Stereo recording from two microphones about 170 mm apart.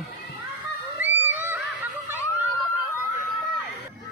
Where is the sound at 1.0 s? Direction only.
10° right (ahead or behind).